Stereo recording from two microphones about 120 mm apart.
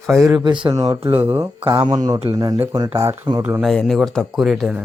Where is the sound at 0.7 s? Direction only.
30° right (ahead or behind).